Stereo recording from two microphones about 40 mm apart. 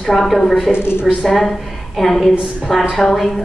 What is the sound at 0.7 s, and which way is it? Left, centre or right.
Speech, left.